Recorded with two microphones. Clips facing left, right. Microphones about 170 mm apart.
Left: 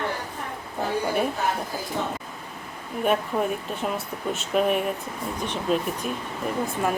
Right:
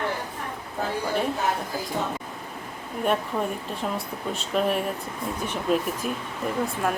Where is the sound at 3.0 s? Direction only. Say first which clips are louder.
Left 2 dB; 5° left (ahead or behind).